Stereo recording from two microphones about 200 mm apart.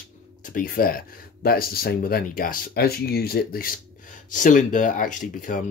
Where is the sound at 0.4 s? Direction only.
45° left (ahead or behind).